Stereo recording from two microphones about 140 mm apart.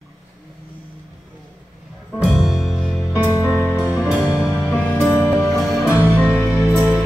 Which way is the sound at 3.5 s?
15° left (ahead or behind).